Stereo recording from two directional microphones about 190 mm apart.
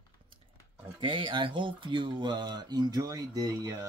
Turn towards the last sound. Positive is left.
turn(degrees=-20)  # may be behind; listen again after turning